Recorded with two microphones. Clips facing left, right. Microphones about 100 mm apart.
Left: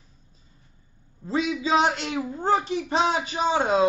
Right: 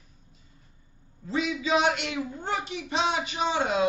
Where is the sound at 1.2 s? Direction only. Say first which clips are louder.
Left 3 dB; 35° left (ahead or behind).